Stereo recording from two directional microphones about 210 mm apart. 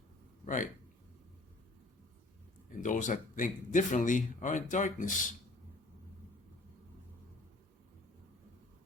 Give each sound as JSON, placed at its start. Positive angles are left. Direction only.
{"t": 0.4, "sound": "speech", "side_deg": 40}
{"t": 2.8, "sound": "speech", "side_deg": 35}